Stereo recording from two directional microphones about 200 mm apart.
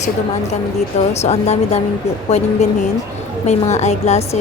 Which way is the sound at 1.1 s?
35° left (ahead or behind).